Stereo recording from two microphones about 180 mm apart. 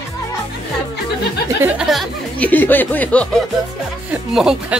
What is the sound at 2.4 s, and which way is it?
Speech, 10° left (ahead or behind).